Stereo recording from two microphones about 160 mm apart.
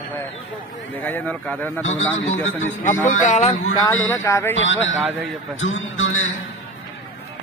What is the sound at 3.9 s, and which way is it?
Speech, 15° left (ahead or behind).